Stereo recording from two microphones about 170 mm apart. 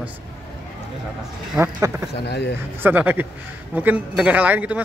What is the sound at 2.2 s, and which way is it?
Speech, 80° left.